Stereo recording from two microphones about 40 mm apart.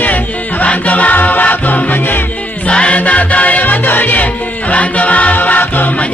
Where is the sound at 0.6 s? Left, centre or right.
Left.